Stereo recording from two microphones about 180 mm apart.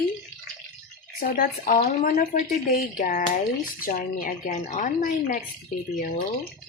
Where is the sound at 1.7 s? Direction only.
40° left (ahead or behind).